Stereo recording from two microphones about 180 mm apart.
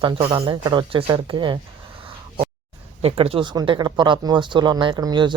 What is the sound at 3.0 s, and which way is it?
Speech, 35° right (ahead or behind).